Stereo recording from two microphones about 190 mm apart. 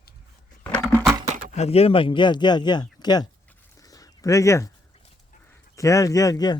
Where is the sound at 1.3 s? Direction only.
45° right (ahead or behind).